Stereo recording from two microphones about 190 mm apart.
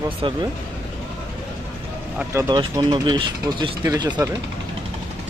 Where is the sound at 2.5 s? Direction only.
20° right (ahead or behind).